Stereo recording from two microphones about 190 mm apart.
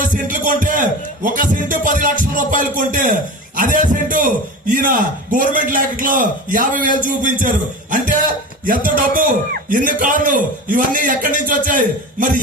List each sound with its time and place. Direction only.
0.0 s music: 45° right (ahead or behind)
2.3 s a man's voice: 45° right (ahead or behind)